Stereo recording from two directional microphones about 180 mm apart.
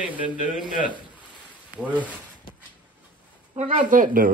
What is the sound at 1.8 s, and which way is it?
Speech, 5° right (ahead or behind).